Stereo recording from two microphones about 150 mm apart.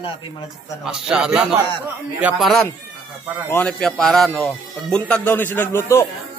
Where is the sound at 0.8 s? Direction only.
5° right (ahead or behind).